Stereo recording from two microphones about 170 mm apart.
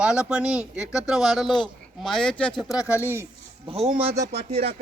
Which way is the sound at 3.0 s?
15° right (ahead or behind).